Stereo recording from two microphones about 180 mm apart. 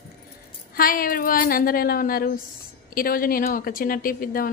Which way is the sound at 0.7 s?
50° left (ahead or behind).